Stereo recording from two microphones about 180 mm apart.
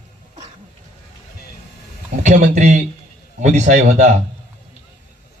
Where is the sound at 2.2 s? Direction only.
45° right (ahead or behind).